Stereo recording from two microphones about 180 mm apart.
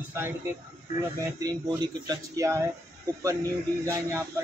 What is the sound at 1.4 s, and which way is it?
Speech, 20° right (ahead or behind).